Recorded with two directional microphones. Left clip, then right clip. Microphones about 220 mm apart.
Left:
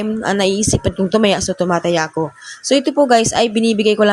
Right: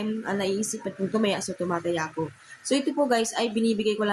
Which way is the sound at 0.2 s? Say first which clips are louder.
Left 13 dB; 40° left (ahead or behind).